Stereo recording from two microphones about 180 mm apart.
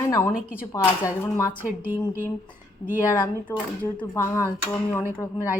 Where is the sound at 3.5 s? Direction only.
15° left (ahead or behind).